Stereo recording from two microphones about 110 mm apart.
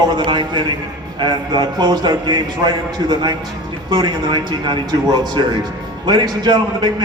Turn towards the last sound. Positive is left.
turn(degrees=-35)  # may be behind; listen again after turning